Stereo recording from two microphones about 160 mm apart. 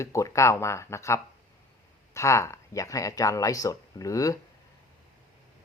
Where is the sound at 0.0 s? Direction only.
20° left (ahead or behind).